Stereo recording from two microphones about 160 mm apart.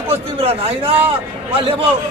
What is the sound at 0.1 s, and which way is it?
Speech, 40° right (ahead or behind).